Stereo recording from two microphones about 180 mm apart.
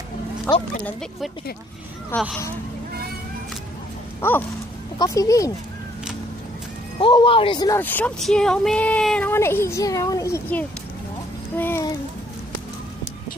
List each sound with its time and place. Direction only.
0.5 s speech: 15° left (ahead or behind)
2.1 s speech: 10° left (ahead or behind)
4.2 s a sound: 10° left (ahead or behind)
4.9 s speech: 20° left (ahead or behind)
7.0 s speech: 30° left (ahead or behind)
7.8 s speech: 10° left (ahead or behind)